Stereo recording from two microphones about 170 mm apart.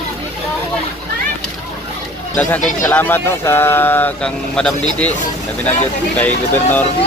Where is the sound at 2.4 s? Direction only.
10° left (ahead or behind).